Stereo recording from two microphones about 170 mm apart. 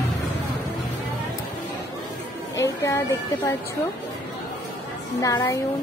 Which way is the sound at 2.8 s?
15° left (ahead or behind).